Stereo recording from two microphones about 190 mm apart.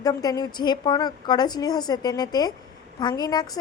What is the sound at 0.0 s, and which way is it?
A woman's voice, 20° left (ahead or behind).